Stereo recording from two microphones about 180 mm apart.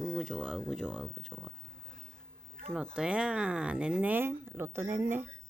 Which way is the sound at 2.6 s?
5° right (ahead or behind).